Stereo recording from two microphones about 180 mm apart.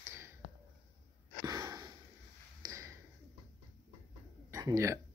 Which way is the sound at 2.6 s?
15° right (ahead or behind).